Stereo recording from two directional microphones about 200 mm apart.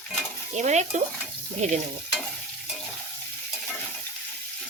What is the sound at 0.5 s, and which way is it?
Speech, 35° right (ahead or behind).